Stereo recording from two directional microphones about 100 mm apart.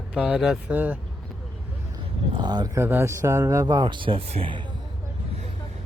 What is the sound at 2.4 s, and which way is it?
Speech, 45° right (ahead or behind).